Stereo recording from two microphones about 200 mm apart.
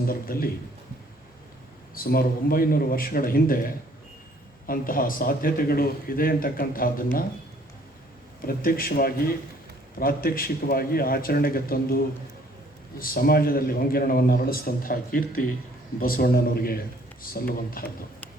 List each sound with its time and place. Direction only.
0.1 s a man's voice: 45° left (ahead or behind)
2.0 s a man's voice: 45° left (ahead or behind)
8.4 s a man's voice: 45° left (ahead or behind)
13.0 s a man's voice: 45° left (ahead or behind)